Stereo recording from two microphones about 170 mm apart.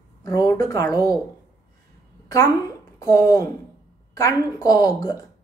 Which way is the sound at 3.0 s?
20° left (ahead or behind).